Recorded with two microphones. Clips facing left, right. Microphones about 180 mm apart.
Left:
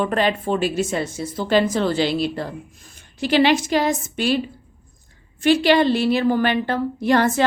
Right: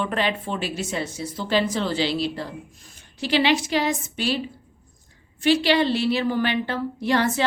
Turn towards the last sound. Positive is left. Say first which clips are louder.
# left 4 dB
turn(degrees=50)  # may be behind; listen again after turning